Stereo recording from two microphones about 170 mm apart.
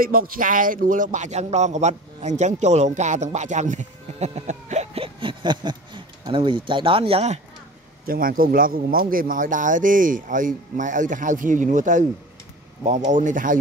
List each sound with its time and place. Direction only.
0.0 s a man's voice: 60° right (ahead or behind); by 7.3 s 35° right (ahead or behind)
8.0 s speech: 55° right (ahead or behind)
13.1 s speech: 50° right (ahead or behind)